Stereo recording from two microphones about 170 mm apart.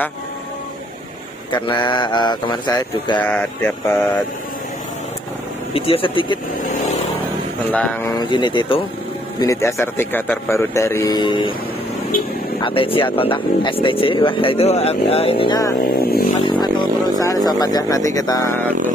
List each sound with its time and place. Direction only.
1.5 s speech: 25° left (ahead or behind)
3.3 s speech: 10° left (ahead or behind)
5.7 s speech: 35° left (ahead or behind)
7.7 s speech: 10° left (ahead or behind)
8.2 s speech: 25° left (ahead or behind)
9.4 s speech: 20° left (ahead or behind)
12.6 s speech: 30° left (ahead or behind)
15.9 s speech: 65° left (ahead or behind)
16.4 s speech: 25° left (ahead or behind)